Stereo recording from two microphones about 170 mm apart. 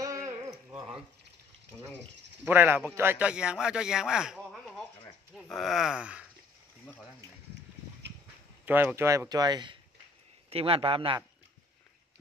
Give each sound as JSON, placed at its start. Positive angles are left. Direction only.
{"t": 0.0, "sound": "a sound", "side_deg": -20}
{"t": 2.4, "sound": "a man's voice", "side_deg": -10}
{"t": 8.6, "sound": "a man's voice", "side_deg": -10}